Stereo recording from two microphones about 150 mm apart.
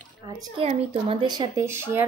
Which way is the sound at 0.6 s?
40° right (ahead or behind).